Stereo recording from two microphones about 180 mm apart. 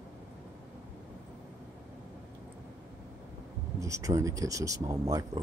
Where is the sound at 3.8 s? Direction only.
15° right (ahead or behind).